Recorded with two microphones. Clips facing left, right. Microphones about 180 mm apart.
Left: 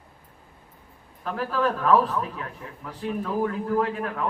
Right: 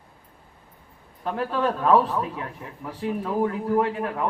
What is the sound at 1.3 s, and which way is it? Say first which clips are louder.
A man's voice: even; 25° right (ahead or behind).